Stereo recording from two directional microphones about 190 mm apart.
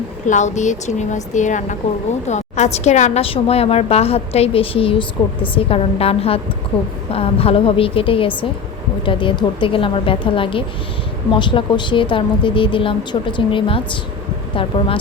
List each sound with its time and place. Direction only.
0.3 s a woman's voice: 40° left (ahead or behind)